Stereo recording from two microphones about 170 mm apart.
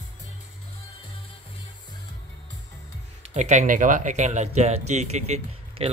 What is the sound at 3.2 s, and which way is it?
Speech, 40° right (ahead or behind).